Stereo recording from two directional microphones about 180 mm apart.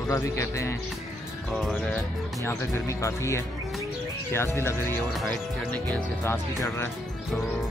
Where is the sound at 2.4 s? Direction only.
15° left (ahead or behind).